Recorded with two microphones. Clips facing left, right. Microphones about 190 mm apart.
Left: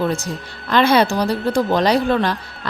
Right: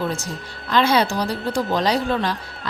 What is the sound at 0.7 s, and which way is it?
Speech, 60° left (ahead or behind).